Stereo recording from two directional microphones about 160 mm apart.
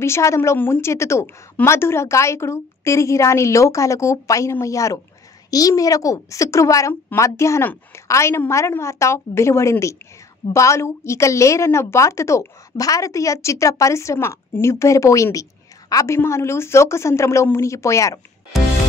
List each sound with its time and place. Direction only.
0.0 s a woman's voice: 15° left (ahead or behind)